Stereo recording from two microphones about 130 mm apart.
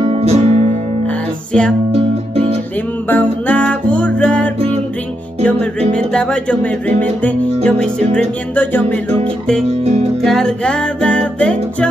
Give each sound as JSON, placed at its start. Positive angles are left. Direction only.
{"t": 0.0, "sound": "music", "side_deg": -50}
{"t": 1.9, "sound": "music", "side_deg": -50}
{"t": 3.1, "sound": "music", "side_deg": 10}
{"t": 10.2, "sound": "music", "side_deg": 5}